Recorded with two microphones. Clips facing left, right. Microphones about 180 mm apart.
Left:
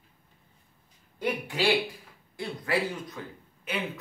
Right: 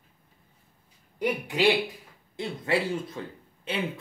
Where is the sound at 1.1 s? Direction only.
20° right (ahead or behind).